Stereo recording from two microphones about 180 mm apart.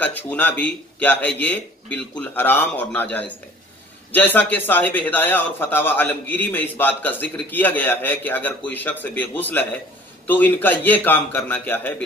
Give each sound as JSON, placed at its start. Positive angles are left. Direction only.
{"t": 0.0, "sound": "a man's voice", "side_deg": 10}